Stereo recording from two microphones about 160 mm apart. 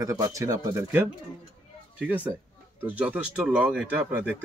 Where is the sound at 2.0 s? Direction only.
10° right (ahead or behind).